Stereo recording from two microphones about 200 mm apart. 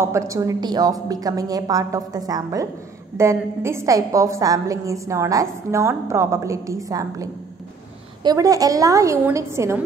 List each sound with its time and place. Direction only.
0.0 s a woman's voice: 15° right (ahead or behind)